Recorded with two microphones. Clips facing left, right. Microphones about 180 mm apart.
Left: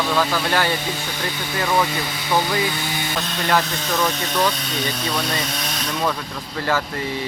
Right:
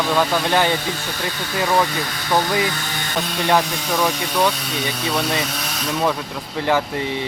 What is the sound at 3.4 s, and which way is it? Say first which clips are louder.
Speech: right 2 dB; 10° right (ahead or behind).